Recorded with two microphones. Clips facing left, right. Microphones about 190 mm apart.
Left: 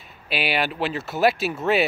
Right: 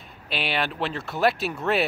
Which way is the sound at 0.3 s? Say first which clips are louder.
Left 3 dB; 5° left (ahead or behind).